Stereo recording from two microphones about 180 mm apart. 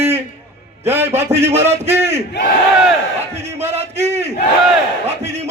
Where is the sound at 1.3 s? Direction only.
35° right (ahead or behind).